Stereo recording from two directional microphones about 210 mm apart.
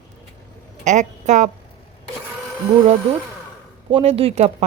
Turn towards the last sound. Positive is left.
turn(degrees=-30)  # may be behind; listen again after turning